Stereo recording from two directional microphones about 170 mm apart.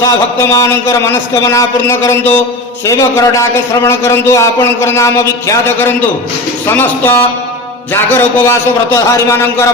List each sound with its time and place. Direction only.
0.0 s a man's voice: 20° left (ahead or behind)